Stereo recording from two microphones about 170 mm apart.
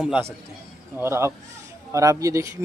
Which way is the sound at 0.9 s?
15° right (ahead or behind).